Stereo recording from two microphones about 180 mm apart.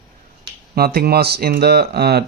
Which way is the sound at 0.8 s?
60° right (ahead or behind).